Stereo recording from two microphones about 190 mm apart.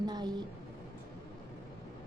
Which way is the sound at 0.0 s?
20° right (ahead or behind).